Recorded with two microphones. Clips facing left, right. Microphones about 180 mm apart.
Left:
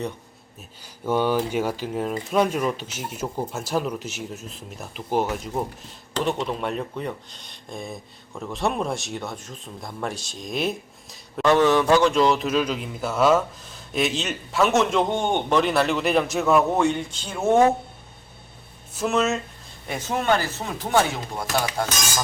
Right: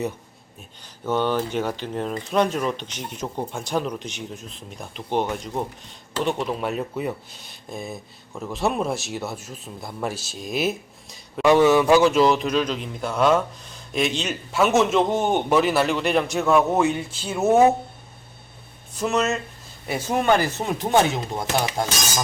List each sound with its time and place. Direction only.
1.0 s speech: 10° left (ahead or behind); by 17.7 s 5° right (ahead or behind)
18.9 s speech: centre (ahead or behind)
19.9 s speech: 10° right (ahead or behind)